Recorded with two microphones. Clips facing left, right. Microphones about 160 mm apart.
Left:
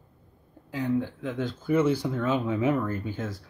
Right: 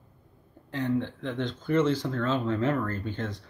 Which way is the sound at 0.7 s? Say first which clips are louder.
Left 1 dB; 5° left (ahead or behind).